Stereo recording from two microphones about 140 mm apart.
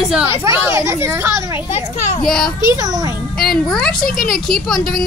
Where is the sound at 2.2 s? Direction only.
5° left (ahead or behind).